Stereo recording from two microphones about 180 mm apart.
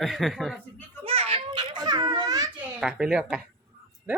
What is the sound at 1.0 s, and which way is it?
A child's voice, 30° right (ahead or behind).